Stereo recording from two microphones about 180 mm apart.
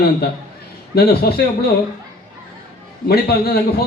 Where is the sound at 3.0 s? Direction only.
60° left (ahead or behind).